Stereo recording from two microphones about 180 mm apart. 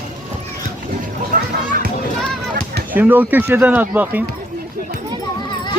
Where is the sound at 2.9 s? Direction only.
10° right (ahead or behind).